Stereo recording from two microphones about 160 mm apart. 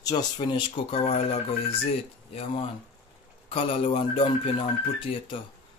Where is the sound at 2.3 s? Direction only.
35° left (ahead or behind).